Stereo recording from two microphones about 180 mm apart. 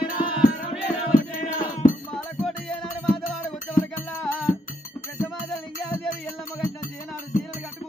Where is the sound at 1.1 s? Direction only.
50° left (ahead or behind).